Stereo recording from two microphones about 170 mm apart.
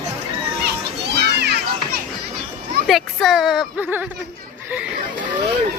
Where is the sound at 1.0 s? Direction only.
75° right (ahead or behind).